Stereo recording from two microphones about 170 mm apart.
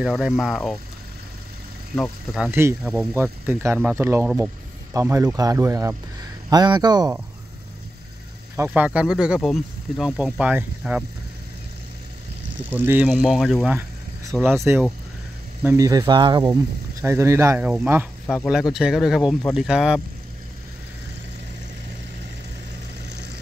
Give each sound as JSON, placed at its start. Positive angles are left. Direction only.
{"t": 0.0, "sound": "speech", "side_deg": -5}
{"t": 2.0, "sound": "speech", "side_deg": -5}
{"t": 8.5, "sound": "speech", "side_deg": -10}
{"t": 12.6, "sound": "speech", "side_deg": -10}
{"t": 14.4, "sound": "speech", "side_deg": -15}
{"t": 17.0, "sound": "speech", "side_deg": -15}
{"t": 18.2, "sound": "speech", "side_deg": 10}
{"t": 18.5, "sound": "speech", "side_deg": -5}